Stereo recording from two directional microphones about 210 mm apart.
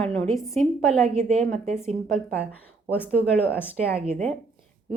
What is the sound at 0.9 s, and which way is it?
Speech, 30° right (ahead or behind).